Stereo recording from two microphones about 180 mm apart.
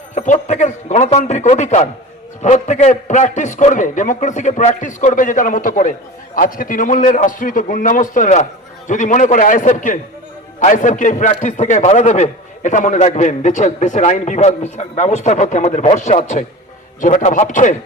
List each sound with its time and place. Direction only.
0.1 s a man's voice: 40° left (ahead or behind)